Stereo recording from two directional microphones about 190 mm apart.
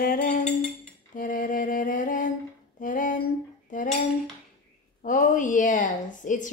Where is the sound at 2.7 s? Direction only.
45° left (ahead or behind).